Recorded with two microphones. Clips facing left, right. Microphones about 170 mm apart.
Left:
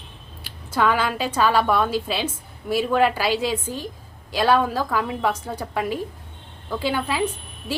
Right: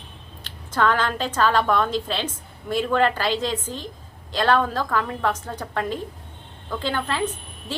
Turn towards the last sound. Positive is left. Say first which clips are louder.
# left 2 dB
turn(degrees=10)  # may be behind; listen again after turning